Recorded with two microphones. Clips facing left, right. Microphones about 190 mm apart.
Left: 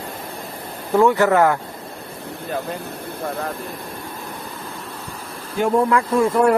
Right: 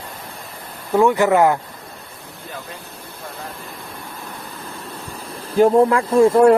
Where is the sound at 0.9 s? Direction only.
15° right (ahead or behind).